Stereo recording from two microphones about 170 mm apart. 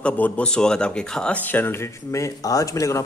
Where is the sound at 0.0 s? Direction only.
5° left (ahead or behind).